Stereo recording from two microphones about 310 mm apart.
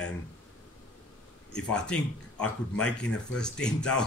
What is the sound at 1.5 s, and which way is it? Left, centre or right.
Speech, centre.